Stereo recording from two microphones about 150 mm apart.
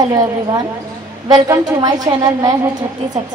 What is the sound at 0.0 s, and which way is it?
Speech, 25° right (ahead or behind).